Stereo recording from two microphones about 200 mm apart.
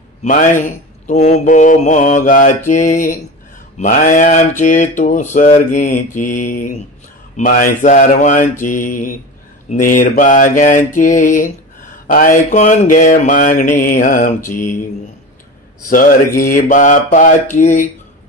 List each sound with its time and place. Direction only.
0.2 s mantra: 40° left (ahead or behind)
15.9 s mantra: 45° left (ahead or behind)